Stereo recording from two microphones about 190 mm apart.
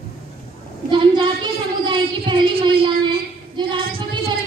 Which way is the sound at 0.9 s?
25° right (ahead or behind).